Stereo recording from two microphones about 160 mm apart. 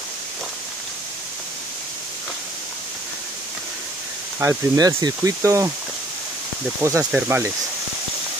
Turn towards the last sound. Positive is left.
turn(degrees=-10)  # may be behind; listen again after turning